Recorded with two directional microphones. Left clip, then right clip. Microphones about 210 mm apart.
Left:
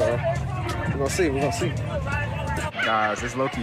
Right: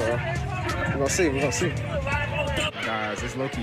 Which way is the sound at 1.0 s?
10° left (ahead or behind).